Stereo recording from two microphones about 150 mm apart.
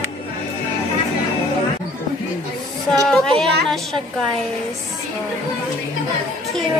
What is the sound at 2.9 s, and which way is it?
Speech, 5° left (ahead or behind).